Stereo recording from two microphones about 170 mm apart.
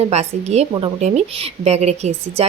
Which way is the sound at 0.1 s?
40° right (ahead or behind).